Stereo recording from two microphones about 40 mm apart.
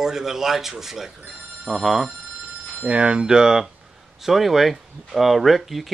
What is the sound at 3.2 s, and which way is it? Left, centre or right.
Speech, centre.